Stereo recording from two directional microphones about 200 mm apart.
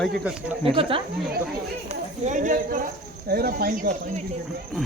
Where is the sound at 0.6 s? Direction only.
30° right (ahead or behind).